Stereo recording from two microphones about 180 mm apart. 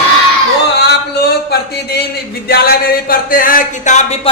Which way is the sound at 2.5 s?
60° left (ahead or behind).